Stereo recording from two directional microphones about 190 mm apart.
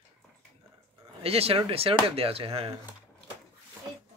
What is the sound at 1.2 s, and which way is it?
Speech, 30° right (ahead or behind).